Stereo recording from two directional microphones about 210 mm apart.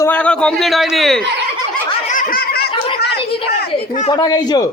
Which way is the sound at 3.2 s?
25° left (ahead or behind).